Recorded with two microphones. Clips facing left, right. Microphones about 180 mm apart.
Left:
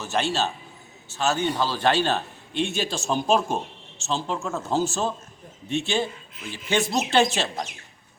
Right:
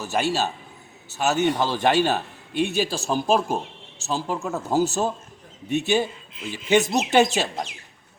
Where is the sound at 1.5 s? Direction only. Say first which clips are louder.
Right 2 dB; 15° right (ahead or behind).